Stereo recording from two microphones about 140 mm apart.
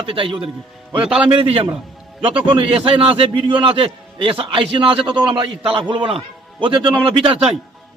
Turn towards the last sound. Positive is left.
turn(degrees=-35)  # may be behind; listen again after turning